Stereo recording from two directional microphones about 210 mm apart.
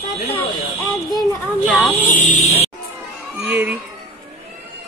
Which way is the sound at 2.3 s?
30° left (ahead or behind).